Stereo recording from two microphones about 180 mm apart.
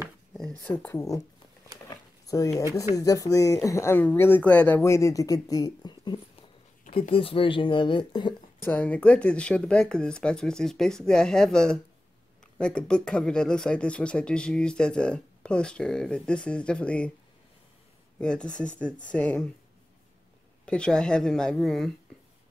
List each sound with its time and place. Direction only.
0.6 s speech: 10° left (ahead or behind)
1.9 s a sound: 20° left (ahead or behind)
3.0 s speech: 20° left (ahead or behind)
8.6 s speech: 10° left (ahead or behind)
18.2 s speech: 5° left (ahead or behind)
20.6 s speech: 5° left (ahead or behind)